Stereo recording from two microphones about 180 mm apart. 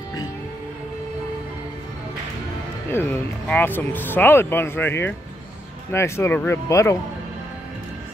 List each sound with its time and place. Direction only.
2.9 s speech: 10° left (ahead or behind)